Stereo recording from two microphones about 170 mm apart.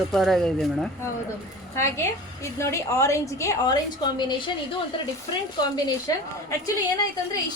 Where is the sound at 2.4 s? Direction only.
15° left (ahead or behind).